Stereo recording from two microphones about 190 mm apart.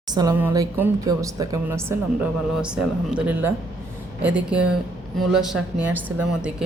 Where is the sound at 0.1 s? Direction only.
20° right (ahead or behind).